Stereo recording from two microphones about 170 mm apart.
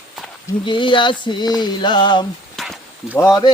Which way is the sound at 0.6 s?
30° left (ahead or behind).